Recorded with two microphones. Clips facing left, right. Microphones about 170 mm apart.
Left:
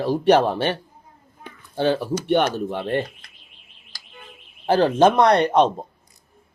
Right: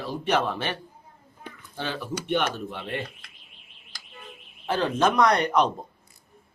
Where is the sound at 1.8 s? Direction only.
30° left (ahead or behind).